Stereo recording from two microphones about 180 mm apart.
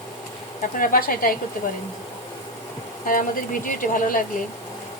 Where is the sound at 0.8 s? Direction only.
50° left (ahead or behind).